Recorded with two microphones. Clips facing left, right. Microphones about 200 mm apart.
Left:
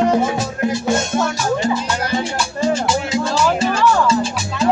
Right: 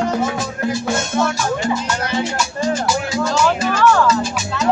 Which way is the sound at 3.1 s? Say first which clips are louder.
Right 1 dB; 25° left (ahead or behind).